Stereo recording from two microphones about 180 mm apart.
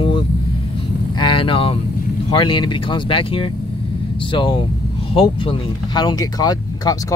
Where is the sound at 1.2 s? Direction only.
30° left (ahead or behind).